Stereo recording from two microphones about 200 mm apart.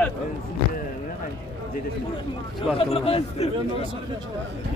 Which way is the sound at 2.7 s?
30° left (ahead or behind).